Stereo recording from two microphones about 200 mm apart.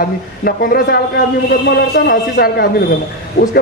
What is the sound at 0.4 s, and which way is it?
A man's voice, 45° left (ahead or behind).